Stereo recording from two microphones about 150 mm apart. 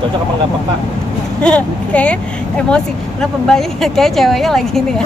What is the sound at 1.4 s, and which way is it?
Speech, 10° left (ahead or behind).